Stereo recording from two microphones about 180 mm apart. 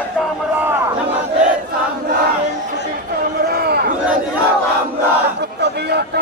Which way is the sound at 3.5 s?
60° right (ahead or behind).